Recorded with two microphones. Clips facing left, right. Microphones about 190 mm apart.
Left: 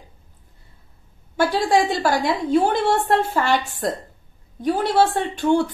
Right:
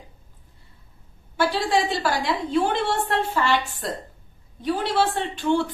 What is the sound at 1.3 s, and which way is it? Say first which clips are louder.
Speech: left 4 dB; 45° left (ahead or behind).